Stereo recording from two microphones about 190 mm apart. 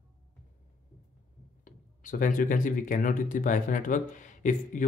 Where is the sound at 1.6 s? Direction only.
45° left (ahead or behind).